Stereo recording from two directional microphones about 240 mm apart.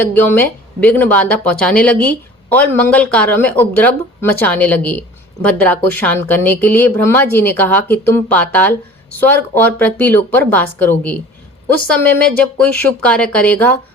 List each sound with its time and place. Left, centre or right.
0.1 s speech: centre